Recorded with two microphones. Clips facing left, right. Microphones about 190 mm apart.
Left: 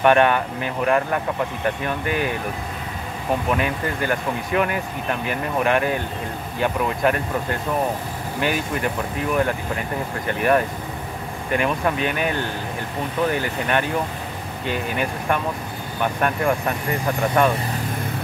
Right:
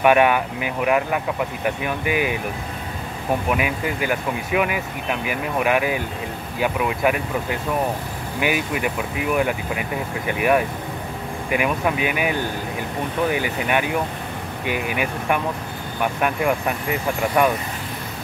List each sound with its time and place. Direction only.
0.0 s speech: 10° right (ahead or behind)
3.4 s speech: 10° right (ahead or behind)